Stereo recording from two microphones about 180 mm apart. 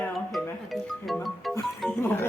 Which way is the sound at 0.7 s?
Centre (ahead or behind).